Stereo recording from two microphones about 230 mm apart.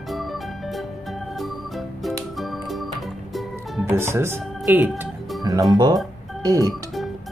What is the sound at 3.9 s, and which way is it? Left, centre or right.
Speech, centre.